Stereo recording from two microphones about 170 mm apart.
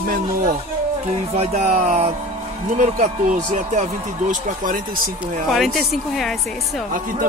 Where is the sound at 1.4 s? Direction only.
45° right (ahead or behind).